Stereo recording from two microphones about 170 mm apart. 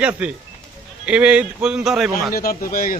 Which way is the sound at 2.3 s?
60° left (ahead or behind).